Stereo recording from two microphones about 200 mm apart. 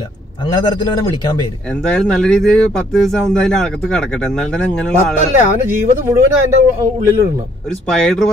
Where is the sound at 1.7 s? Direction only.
5° left (ahead or behind).